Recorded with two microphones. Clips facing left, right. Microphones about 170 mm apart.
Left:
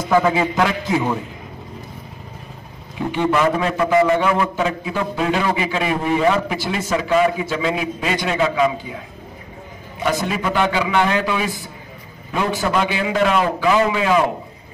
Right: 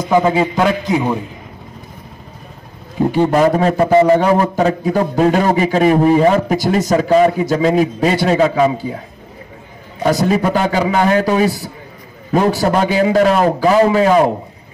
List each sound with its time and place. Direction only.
0.0 s a man's voice: 15° right (ahead or behind)
3.0 s a man's voice: 40° right (ahead or behind)
10.0 s a man's voice: 40° right (ahead or behind)